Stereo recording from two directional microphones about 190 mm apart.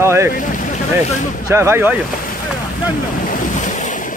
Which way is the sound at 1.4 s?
15° right (ahead or behind).